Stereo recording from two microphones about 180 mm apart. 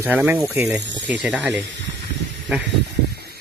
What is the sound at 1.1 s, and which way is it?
Speech, 5° right (ahead or behind).